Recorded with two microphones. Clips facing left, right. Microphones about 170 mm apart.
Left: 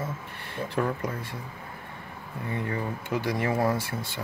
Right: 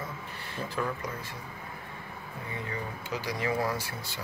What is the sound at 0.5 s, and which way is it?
Speech, 55° left (ahead or behind).